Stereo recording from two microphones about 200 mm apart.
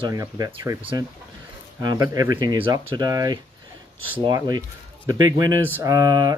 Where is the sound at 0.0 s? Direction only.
15° right (ahead or behind).